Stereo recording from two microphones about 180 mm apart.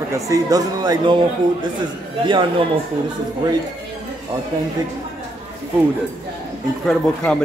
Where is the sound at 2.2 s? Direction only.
25° right (ahead or behind).